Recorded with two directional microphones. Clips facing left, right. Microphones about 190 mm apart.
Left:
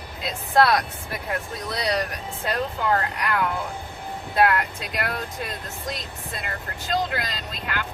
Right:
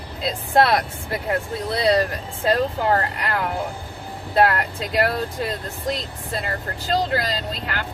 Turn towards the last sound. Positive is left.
turn(degrees=-35)  # may be behind; listen again after turning